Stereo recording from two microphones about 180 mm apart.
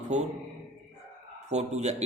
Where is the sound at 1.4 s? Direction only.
40° right (ahead or behind).